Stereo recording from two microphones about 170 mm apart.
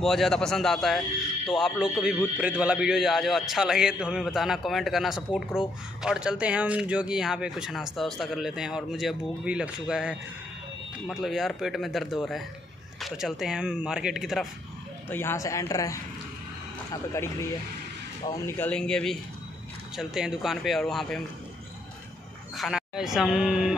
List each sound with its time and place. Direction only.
0.0 s speech: centre (ahead or behind)
15.0 s speech: 15° left (ahead or behind)
22.6 s speech: centre (ahead or behind)